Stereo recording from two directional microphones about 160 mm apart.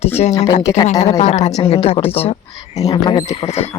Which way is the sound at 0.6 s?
20° left (ahead or behind).